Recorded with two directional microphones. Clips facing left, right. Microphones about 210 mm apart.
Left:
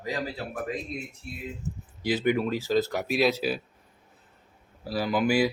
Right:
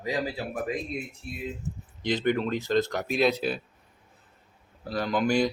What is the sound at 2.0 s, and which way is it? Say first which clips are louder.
Speech: left 1 dB; 5° left (ahead or behind).